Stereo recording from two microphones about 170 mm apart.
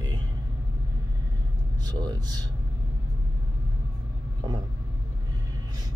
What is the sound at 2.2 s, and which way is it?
Speech, 25° right (ahead or behind).